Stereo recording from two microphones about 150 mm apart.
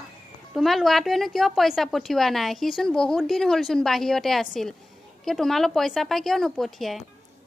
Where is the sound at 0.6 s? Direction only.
Centre (ahead or behind).